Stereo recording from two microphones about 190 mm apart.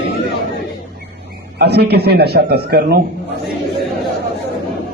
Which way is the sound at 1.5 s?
60° right (ahead or behind).